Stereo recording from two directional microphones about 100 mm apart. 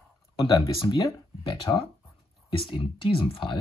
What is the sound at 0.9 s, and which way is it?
Speech, 35° left (ahead or behind).